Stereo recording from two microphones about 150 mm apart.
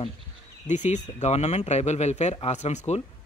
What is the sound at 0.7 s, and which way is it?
Speech, 50° left (ahead or behind).